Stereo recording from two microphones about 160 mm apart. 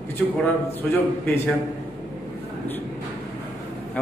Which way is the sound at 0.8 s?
5° left (ahead or behind).